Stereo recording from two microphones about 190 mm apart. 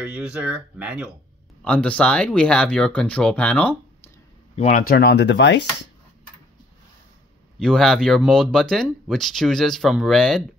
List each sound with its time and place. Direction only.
0.0 s speech: 5° right (ahead or behind)
1.6 s speech: 5° left (ahead or behind)
4.6 s speech: 40° left (ahead or behind); by 5.7 s 65° left (ahead or behind)
7.5 s speech: centre (ahead or behind)